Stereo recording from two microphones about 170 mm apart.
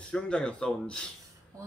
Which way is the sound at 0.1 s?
5° left (ahead or behind).